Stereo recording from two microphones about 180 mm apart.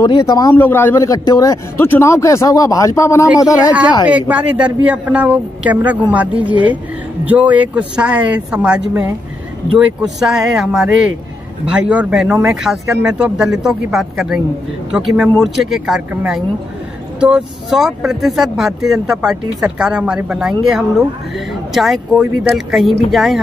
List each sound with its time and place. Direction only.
0.0 s speech: 20° left (ahead or behind)
4.1 s a man's voice: 10° right (ahead or behind)